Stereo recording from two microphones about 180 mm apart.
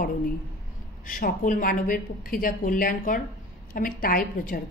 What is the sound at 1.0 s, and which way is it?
A woman's voice, 50° left (ahead or behind).